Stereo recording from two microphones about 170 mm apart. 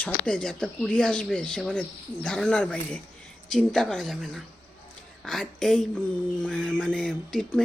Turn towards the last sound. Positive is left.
turn(degrees=5)  # may be behind; listen again after turning